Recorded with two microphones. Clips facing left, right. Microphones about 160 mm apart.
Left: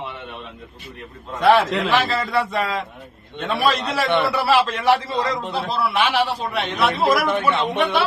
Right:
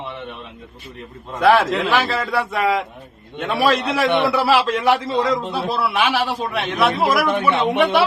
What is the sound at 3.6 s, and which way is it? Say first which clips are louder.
A man's voice: right 3 dB; 10° right (ahead or behind).